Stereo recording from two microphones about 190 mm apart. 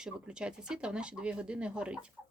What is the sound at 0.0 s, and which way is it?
Speech, 5° right (ahead or behind).